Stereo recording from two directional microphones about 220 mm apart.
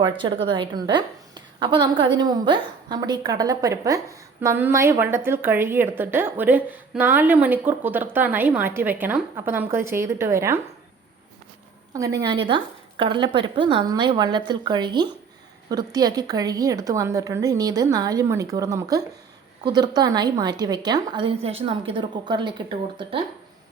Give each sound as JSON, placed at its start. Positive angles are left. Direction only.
{"t": 0.0, "sound": "a woman's voice", "side_deg": -20}
{"t": 11.9, "sound": "a woman's voice", "side_deg": -15}